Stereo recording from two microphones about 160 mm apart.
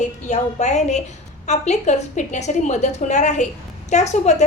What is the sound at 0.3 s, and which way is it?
A woman's voice, 45° left (ahead or behind).